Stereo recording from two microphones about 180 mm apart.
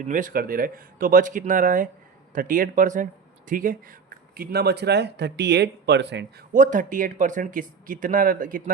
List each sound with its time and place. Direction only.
0.1 s speech: 45° right (ahead or behind)
4.4 s speech: 60° right (ahead or behind)
6.5 s speech: 45° right (ahead or behind)